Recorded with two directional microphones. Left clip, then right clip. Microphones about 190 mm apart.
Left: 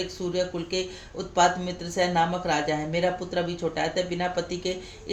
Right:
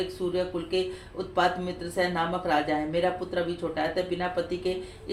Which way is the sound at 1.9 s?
45° left (ahead or behind).